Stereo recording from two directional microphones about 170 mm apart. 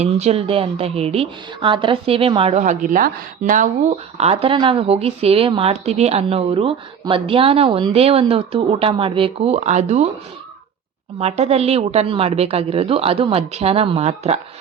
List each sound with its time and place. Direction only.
0.0 s a woman's voice: 40° right (ahead or behind)
3.8 s a woman's voice: 40° right (ahead or behind)
11.2 s a woman's voice: 40° right (ahead or behind)